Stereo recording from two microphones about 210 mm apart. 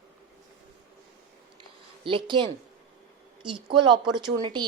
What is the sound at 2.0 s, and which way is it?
Speech, 25° right (ahead or behind).